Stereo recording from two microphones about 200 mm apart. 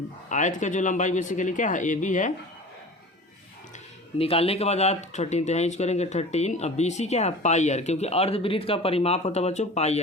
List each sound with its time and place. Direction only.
0.3 s speech: 40° left (ahead or behind)
4.2 s speech: 30° left (ahead or behind)